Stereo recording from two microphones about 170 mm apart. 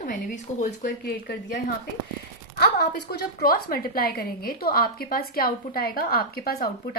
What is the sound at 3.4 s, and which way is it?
A woman's voice, 60° left (ahead or behind).